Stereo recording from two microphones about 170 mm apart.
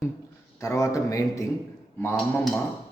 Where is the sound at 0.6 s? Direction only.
20° left (ahead or behind).